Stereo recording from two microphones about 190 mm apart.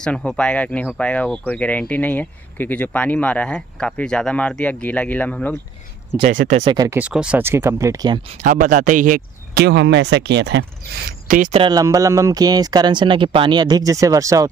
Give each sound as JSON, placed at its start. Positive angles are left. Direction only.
{"t": 0.0, "sound": "speech", "side_deg": 5}
{"t": 6.2, "sound": "speech", "side_deg": -45}
{"t": 6.6, "sound": "speech", "side_deg": -20}
{"t": 7.0, "sound": "speech", "side_deg": -5}
{"t": 8.4, "sound": "speech", "side_deg": -45}
{"t": 9.7, "sound": "speech", "side_deg": -65}
{"t": 11.2, "sound": "speech", "side_deg": -45}
{"t": 11.5, "sound": "speech", "side_deg": -25}